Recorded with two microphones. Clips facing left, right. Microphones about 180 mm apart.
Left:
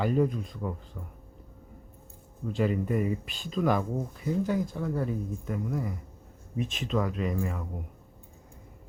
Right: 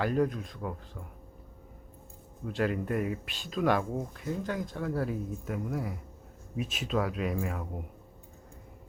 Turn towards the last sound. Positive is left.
turn(degrees=-10)  # may be behind; listen again after turning